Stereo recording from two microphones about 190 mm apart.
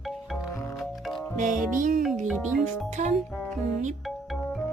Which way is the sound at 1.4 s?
45° right (ahead or behind).